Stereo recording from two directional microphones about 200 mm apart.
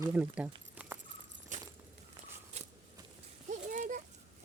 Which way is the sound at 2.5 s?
35° right (ahead or behind).